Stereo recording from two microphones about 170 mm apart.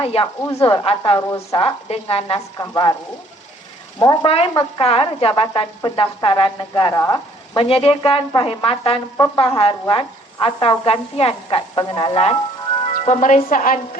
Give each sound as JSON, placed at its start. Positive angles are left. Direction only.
{"t": 0.0, "sound": "speech", "side_deg": 35}
{"t": 1.6, "sound": "speech", "side_deg": 35}
{"t": 4.0, "sound": "speech", "side_deg": 25}
{"t": 12.9, "sound": "speech", "side_deg": 45}